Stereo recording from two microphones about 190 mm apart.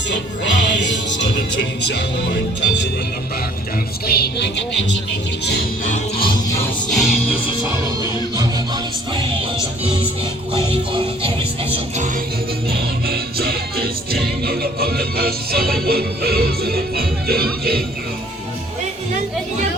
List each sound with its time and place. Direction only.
0.1 s music: 65° left (ahead or behind)
4.0 s a woman's voice: 55° left (ahead or behind)
6.1 s music: 25° left (ahead or behind)
6.9 s music: centre (ahead or behind)
8.4 s music: 20° right (ahead or behind)
10.5 s music: 30° right (ahead or behind)
12.7 s music: 55° right (ahead or behind)